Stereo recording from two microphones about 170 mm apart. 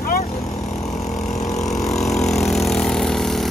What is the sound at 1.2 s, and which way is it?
Vehicle, centre (ahead or behind).